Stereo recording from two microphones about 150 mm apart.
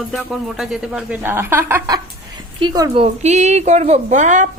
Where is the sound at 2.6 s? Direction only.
30° right (ahead or behind).